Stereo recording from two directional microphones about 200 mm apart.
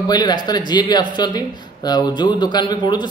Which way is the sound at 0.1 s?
20° left (ahead or behind).